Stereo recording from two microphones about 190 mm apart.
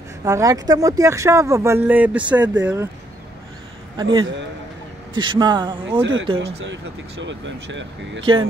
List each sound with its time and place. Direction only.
0.2 s speech: 15° right (ahead or behind)
3.9 s a man's voice: 25° right (ahead or behind)
6.6 s speech: 75° right (ahead or behind)
8.2 s speech: 25° right (ahead or behind)